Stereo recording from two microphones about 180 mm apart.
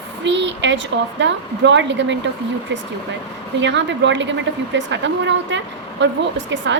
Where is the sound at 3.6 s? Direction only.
80° right.